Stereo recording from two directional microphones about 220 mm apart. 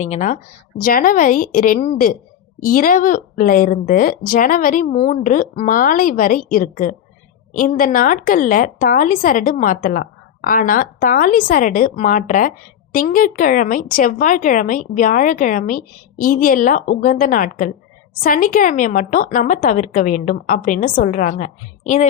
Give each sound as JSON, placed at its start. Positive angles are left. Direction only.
{"t": 0.0, "sound": "a woman's voice", "side_deg": 30}